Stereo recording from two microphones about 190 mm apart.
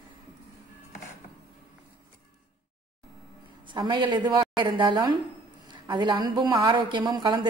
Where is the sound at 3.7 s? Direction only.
25° right (ahead or behind).